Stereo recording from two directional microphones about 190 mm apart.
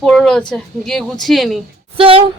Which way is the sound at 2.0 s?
30° right (ahead or behind).